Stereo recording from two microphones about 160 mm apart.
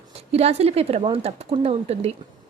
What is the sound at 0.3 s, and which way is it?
Speech, 40° right (ahead or behind).